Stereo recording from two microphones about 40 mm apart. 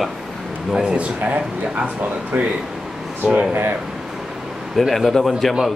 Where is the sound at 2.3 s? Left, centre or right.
Right.